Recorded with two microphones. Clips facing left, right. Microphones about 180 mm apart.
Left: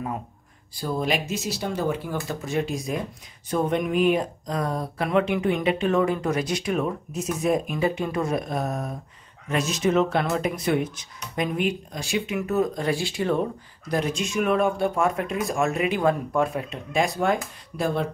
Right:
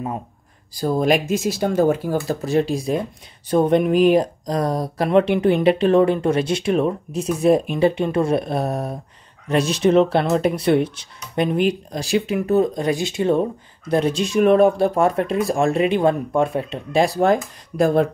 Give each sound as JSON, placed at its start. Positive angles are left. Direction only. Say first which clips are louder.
{"t": 0.7, "sound": "speech", "louder": "right 8 dB", "side_deg": -45}
{"t": 2.2, "sound": "speech", "louder": "right 8 dB", "side_deg": -35}